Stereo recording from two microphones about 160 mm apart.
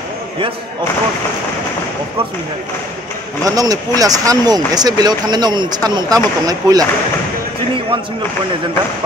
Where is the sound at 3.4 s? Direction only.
25° right (ahead or behind).